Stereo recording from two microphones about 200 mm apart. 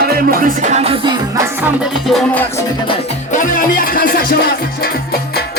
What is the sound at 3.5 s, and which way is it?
Music, 45° left (ahead or behind).